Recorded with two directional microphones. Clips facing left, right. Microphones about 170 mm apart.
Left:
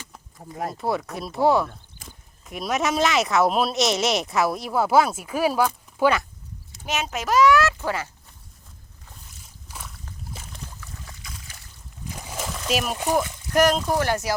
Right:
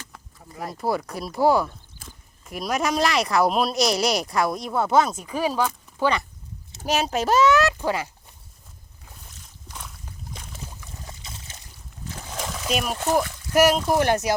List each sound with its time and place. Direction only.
0.7 s speech: centre (ahead or behind)
6.8 s speech: 35° right (ahead or behind); by 8.1 s 15° right (ahead or behind)
9.6 s a sound: 5° left (ahead or behind)
10.3 s boat: centre (ahead or behind)
10.8 s a sound: 25° right (ahead or behind)
12.0 s splash: 10° left (ahead or behind)
13.5 s speech: 5° right (ahead or behind)
13.9 s speech: 20° right (ahead or behind)